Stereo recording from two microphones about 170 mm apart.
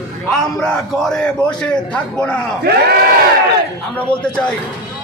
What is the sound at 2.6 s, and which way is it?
Speech, 70° right (ahead or behind).